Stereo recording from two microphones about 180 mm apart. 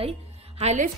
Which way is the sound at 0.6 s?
40° right (ahead or behind).